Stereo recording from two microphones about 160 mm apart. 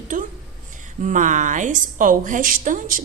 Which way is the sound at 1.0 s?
50° right (ahead or behind).